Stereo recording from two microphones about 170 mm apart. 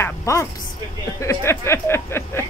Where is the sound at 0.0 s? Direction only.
15° left (ahead or behind).